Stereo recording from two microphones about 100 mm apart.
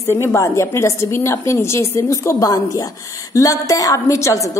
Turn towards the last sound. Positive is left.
turn(degrees=30)  # may be behind; listen again after turning